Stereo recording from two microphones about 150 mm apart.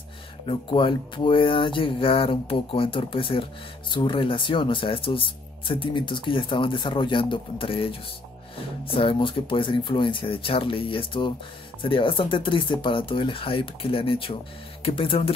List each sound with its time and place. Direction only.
0.5 s speech: 35° left (ahead or behind)